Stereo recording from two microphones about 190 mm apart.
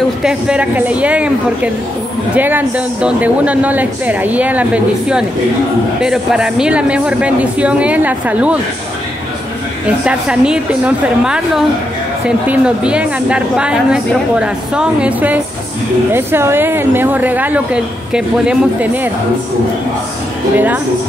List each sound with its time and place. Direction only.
0.2 s speech: 5° right (ahead or behind)
10.0 s a woman's voice: 5° right (ahead or behind)
20.5 s speech: 10° right (ahead or behind)